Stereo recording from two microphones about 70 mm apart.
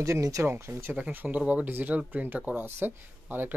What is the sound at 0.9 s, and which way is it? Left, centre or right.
Speech, right.